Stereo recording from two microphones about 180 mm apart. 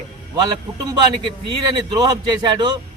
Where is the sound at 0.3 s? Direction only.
25° right (ahead or behind).